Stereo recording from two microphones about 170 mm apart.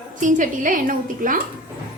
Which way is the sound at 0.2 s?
50° right (ahead or behind).